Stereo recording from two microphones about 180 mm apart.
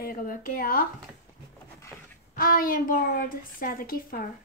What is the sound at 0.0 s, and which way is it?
Speech, 50° left (ahead or behind).